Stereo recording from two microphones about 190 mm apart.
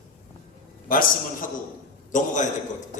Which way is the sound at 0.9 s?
45° left (ahead or behind).